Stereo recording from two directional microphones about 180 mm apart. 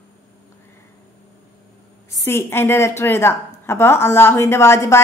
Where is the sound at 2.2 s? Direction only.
15° left (ahead or behind).